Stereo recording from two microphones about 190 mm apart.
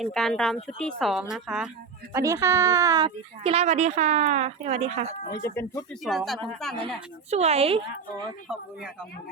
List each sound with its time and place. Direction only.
0.0 s speech: centre (ahead or behind)
2.1 s speech: 15° right (ahead or behind)
3.4 s speech: 35° right (ahead or behind)
5.4 s speech: 15° left (ahead or behind)
6.1 s speech: centre (ahead or behind)
6.7 s speech: 30° right (ahead or behind)